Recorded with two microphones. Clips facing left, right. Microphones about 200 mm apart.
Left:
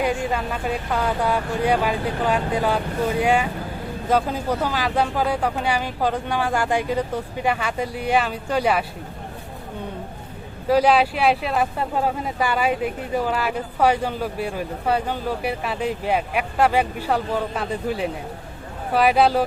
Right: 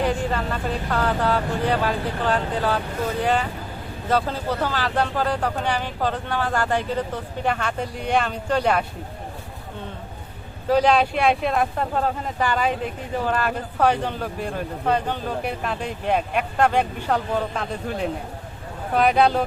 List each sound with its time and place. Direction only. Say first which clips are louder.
0.0 s speech: even; 10° left (ahead or behind)
10.7 s speech: left 1 dB; 10° left (ahead or behind)